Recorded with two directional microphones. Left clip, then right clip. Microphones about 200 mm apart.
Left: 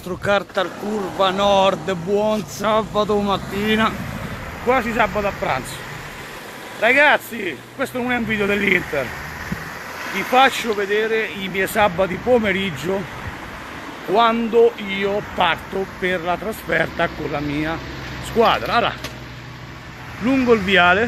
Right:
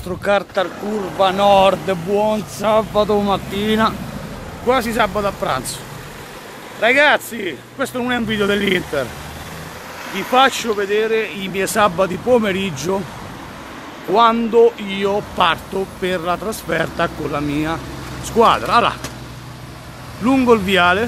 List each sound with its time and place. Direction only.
0.2 s speech: centre (ahead or behind)
6.8 s speech: 5° right (ahead or behind)
10.3 s speech: 5° right (ahead or behind)
14.1 s speech: 10° right (ahead or behind)
15.3 s speech: 5° right (ahead or behind)
20.2 s speech: 10° right (ahead or behind)
20.7 s speech: 5° left (ahead or behind)